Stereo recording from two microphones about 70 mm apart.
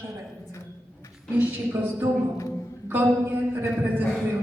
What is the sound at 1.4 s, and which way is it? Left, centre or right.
A man's voice, right.